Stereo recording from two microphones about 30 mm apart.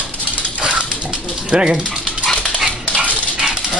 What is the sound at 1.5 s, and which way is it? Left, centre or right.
Speech, right.